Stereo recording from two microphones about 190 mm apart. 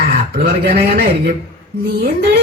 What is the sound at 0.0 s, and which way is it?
A woman's voice, 55° right (ahead or behind).